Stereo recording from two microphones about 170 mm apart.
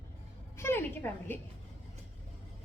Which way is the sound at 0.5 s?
15° left (ahead or behind).